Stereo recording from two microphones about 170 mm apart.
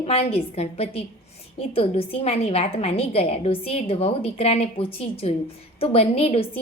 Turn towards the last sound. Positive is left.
turn(degrees=35)  # may be behind; listen again after turning